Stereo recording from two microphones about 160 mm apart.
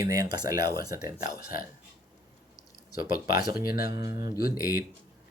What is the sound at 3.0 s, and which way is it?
Speech, 70° left (ahead or behind).